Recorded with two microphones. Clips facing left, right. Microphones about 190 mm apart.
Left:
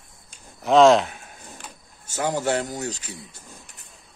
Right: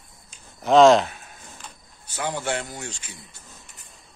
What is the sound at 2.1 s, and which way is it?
Speech, 40° left (ahead or behind).